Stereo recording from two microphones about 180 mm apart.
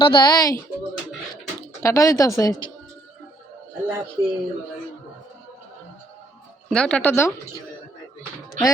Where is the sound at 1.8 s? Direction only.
15° left (ahead or behind).